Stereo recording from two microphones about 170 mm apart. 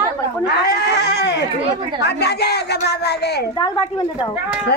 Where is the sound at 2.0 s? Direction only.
75° left (ahead or behind).